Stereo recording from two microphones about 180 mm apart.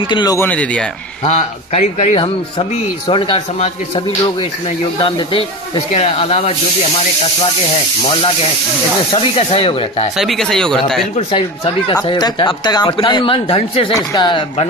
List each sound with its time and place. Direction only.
0.1 s speech: 20° left (ahead or behind)
0.5 s speech: 5° left (ahead or behind)
1.2 s speech: 40° left (ahead or behind)
9.1 s speech: 30° left (ahead or behind)
10.1 s speech: centre (ahead or behind)
11.1 s speech: 30° left (ahead or behind)